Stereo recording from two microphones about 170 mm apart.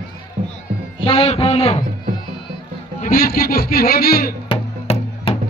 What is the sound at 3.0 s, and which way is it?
A man's voice, 55° left (ahead or behind).